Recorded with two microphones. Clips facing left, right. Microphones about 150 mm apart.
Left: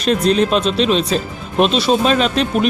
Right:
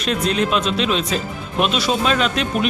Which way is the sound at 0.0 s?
35° left (ahead or behind).